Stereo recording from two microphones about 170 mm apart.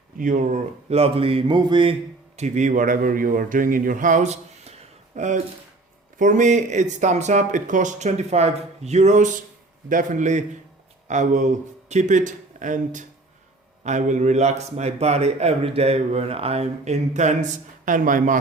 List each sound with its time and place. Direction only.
0.2 s a man's voice: 50° right (ahead or behind)